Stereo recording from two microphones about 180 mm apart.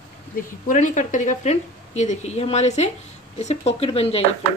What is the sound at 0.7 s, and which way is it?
Speech, 45° left (ahead or behind).